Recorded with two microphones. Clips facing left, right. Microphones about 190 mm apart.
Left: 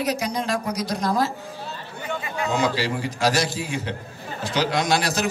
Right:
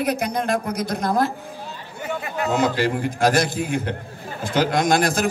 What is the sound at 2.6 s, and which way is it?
A man's voice, 55° right (ahead or behind).